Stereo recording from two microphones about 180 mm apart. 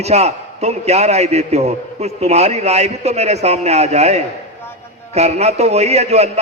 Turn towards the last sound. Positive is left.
turn(degrees=-35)  # may be behind; listen again after turning